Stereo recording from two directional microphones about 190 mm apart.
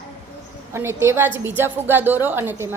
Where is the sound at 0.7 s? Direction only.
15° right (ahead or behind).